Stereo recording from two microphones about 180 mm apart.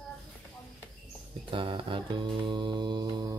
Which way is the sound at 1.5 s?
30° right (ahead or behind).